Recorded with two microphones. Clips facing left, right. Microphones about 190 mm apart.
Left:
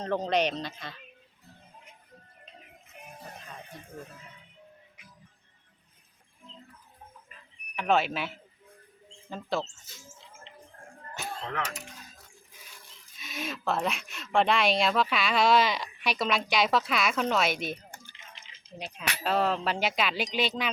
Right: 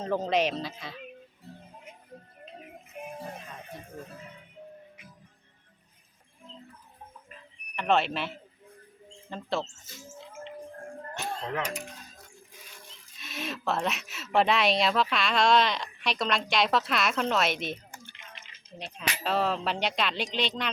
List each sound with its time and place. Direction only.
0.0 s speech: 5° right (ahead or behind)
7.8 s speech: centre (ahead or behind)
9.3 s speech: centre (ahead or behind)
11.4 s mechanisms: 15° right (ahead or behind)
13.1 s speech: centre (ahead or behind)
18.0 s drip: 65° right (ahead or behind)
18.8 s speech: centre (ahead or behind)